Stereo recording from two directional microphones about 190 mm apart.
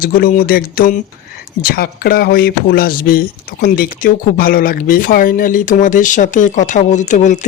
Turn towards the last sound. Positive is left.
turn(degrees=40)  # may be behind; listen again after turning